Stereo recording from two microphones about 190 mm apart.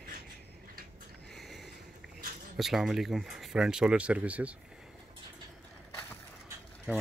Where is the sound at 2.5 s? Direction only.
Centre (ahead or behind).